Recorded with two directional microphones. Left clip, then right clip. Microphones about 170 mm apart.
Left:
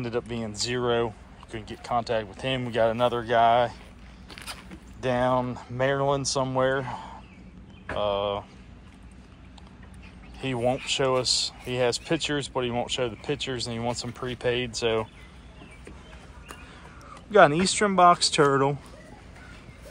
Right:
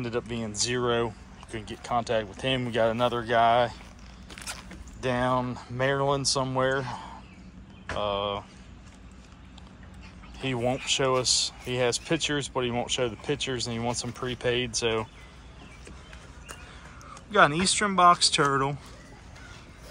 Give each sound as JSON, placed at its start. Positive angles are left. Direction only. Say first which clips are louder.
{"t": 0.0, "sound": "speech", "louder": "left 1 dB", "side_deg": -10}
{"t": 4.3, "sound": "a sound", "louder": "even", "side_deg": 5}
{"t": 5.0, "sound": "speech", "louder": "left 2 dB", "side_deg": -10}
{"t": 10.4, "sound": "speech", "louder": "left 2 dB", "side_deg": -15}
{"t": 17.3, "sound": "speech", "louder": "left 3 dB", "side_deg": 0}